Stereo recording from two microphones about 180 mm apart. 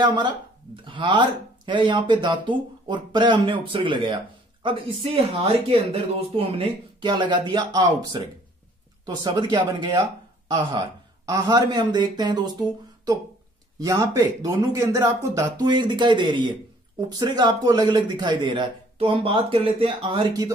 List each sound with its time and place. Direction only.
0.0 s a man's voice: 25° right (ahead or behind)
13.8 s a man's voice: 20° right (ahead or behind)